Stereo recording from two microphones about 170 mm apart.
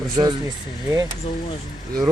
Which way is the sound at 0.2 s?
30° right (ahead or behind).